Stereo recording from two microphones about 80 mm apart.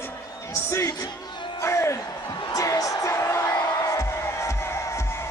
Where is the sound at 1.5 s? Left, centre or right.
Left.